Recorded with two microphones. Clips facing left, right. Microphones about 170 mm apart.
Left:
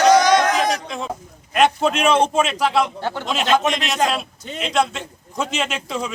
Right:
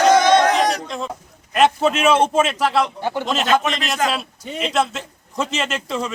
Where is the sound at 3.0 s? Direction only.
15° right (ahead or behind).